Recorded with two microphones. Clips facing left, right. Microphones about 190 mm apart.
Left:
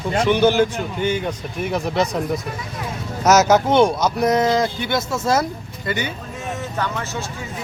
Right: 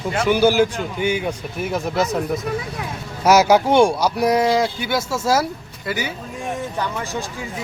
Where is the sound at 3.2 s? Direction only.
10° right (ahead or behind).